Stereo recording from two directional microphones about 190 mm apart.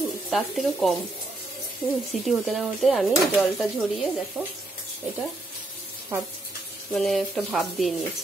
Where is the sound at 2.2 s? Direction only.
Centre (ahead or behind).